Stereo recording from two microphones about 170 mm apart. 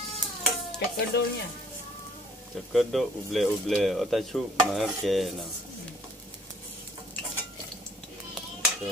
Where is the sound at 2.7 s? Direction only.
Centre (ahead or behind).